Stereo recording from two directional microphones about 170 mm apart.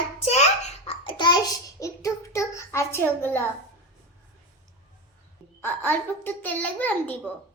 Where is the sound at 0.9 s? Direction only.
30° left (ahead or behind); by 3.4 s 15° left (ahead or behind).